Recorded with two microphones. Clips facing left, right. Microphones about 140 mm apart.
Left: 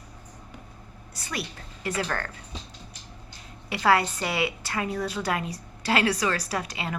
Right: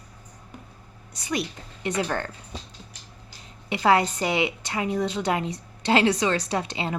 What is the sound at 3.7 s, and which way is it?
A woman's voice, 20° right (ahead or behind).